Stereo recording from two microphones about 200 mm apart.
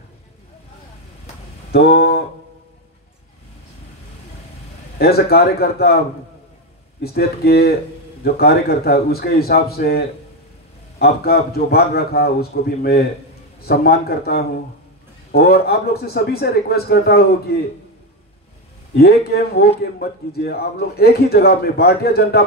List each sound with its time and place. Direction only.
1.7 s speech: 50° left (ahead or behind)
4.9 s speech: 50° left (ahead or behind)
7.0 s speech: 50° left (ahead or behind)
18.9 s speech: 50° left (ahead or behind)